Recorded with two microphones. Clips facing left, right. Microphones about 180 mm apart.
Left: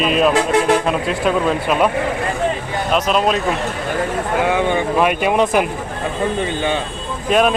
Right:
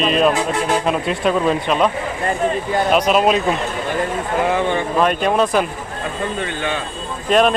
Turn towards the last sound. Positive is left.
turn(degrees=5)  # may be behind; listen again after turning